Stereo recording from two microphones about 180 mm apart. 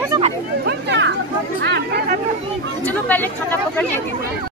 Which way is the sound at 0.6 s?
75° right (ahead or behind).